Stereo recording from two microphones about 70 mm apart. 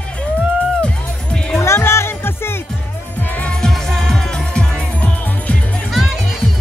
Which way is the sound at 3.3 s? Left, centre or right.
Centre.